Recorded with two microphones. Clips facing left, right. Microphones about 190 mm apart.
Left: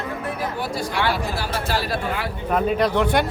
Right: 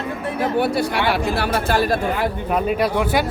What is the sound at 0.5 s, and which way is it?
Speech, 65° right (ahead or behind).